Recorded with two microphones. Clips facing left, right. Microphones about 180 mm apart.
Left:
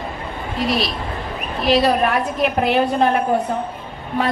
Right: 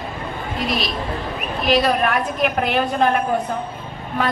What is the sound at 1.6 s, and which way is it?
A woman's voice, 35° left (ahead or behind).